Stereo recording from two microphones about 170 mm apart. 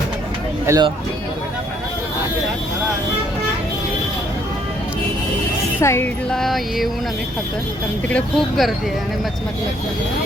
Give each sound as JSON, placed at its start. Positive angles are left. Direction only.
{"t": 0.7, "sound": "speech", "side_deg": -15}
{"t": 5.8, "sound": "music", "side_deg": 15}
{"t": 6.3, "sound": "speech", "side_deg": 0}
{"t": 8.0, "sound": "speech", "side_deg": 5}